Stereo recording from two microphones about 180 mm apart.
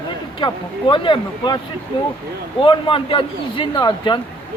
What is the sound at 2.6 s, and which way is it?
A man's voice, 30° left (ahead or behind).